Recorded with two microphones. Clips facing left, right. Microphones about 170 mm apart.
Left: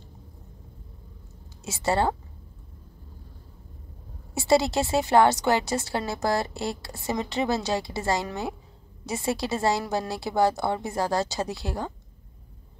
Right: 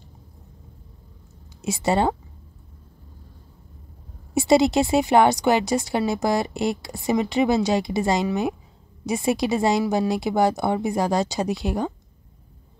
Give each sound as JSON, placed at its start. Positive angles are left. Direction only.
{"t": 1.6, "sound": "a woman's voice", "side_deg": -15}
{"t": 4.3, "sound": "a woman's voice", "side_deg": -15}